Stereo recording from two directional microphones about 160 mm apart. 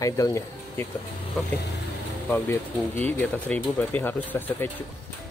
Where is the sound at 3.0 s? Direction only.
10° left (ahead or behind).